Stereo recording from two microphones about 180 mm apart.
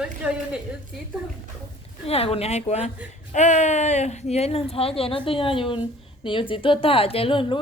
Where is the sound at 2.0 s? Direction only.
35° left (ahead or behind).